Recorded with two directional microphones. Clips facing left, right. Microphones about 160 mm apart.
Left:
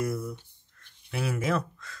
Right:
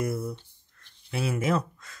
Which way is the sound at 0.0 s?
30° right (ahead or behind).